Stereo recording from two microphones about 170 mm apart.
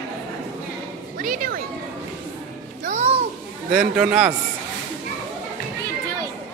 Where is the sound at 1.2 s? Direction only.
55° right (ahead or behind).